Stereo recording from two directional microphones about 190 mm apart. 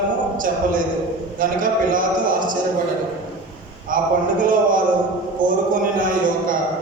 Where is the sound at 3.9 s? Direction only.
45° right (ahead or behind).